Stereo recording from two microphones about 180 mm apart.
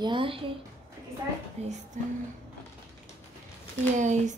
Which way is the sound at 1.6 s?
35° right (ahead or behind).